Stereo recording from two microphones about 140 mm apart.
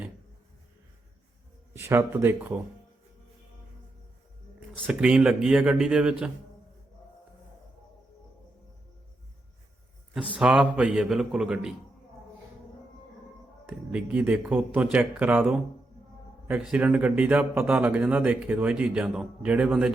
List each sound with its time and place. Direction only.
1.8 s speech: 15° right (ahead or behind)
4.9 s speech: 5° right (ahead or behind)
10.2 s speech: 10° right (ahead or behind)
13.9 s speech: 10° right (ahead or behind)